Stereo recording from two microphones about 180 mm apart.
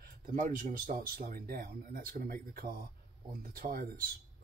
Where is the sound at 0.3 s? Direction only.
50° right (ahead or behind).